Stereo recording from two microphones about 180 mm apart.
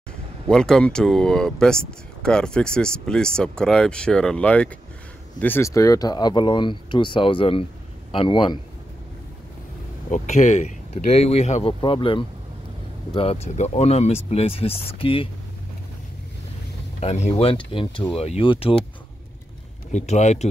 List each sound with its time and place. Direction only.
0.5 s speech: 5° left (ahead or behind); by 8.5 s 25° left (ahead or behind)
10.1 s speech: 40° left (ahead or behind)
17.0 s speech: 35° left (ahead or behind)
19.9 s speech: 40° left (ahead or behind)